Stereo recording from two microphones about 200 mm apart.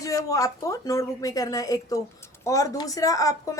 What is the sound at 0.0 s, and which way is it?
Speech, 15° left (ahead or behind).